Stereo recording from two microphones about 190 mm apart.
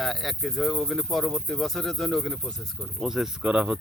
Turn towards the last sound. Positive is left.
turn(degrees=-5)  # may be behind; listen again after turning